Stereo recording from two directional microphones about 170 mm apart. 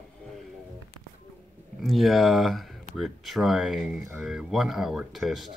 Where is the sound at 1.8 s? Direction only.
Centre (ahead or behind).